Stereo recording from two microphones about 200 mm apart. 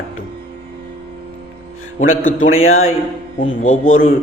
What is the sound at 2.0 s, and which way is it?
Speech, 90° left.